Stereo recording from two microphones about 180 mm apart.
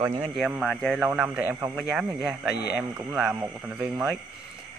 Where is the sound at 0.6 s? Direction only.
Centre (ahead or behind).